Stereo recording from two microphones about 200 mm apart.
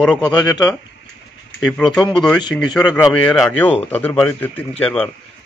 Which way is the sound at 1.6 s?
Centre (ahead or behind).